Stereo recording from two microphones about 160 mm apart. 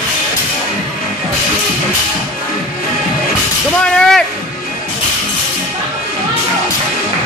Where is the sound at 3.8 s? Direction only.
5° left (ahead or behind).